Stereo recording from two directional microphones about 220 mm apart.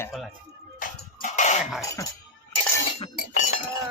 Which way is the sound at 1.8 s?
15° left (ahead or behind).